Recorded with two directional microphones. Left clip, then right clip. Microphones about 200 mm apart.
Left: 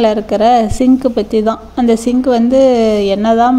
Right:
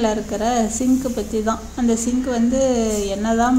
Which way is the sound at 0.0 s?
40° left (ahead or behind).